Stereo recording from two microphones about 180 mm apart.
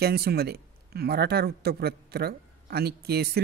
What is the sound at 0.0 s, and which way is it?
Speech, 60° right (ahead or behind).